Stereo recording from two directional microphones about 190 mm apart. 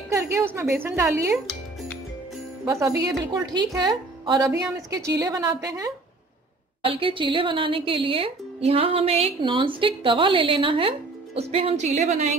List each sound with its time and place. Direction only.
0.1 s speech: 15° right (ahead or behind)
2.6 s speech: 15° right (ahead or behind); by 12.4 s 35° right (ahead or behind)